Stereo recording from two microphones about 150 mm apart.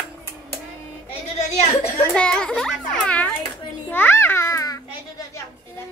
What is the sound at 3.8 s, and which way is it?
Babbling, 15° left (ahead or behind).